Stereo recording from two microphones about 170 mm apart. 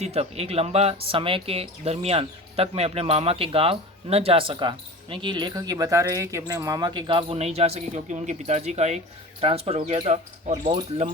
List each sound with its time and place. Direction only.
0.0 s speech: 40° right (ahead or behind)